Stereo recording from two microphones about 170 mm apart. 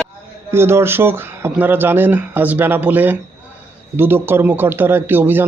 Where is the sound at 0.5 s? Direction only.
15° right (ahead or behind).